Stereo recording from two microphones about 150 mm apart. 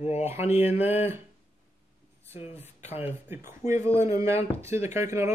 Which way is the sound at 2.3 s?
45° left (ahead or behind).